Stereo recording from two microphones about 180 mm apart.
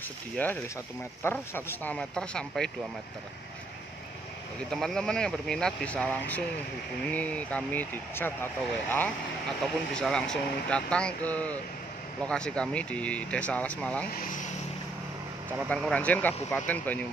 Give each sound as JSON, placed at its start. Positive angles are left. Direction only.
{"t": 0.4, "sound": "speech", "side_deg": 10}
{"t": 4.6, "sound": "speech", "side_deg": 0}
{"t": 14.1, "sound": "speech", "side_deg": 45}
{"t": 15.7, "sound": "speech", "side_deg": 5}